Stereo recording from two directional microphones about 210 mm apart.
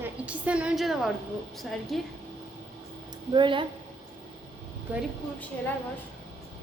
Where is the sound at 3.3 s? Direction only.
25° right (ahead or behind).